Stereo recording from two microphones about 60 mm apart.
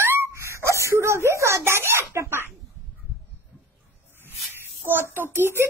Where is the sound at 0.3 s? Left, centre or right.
Right.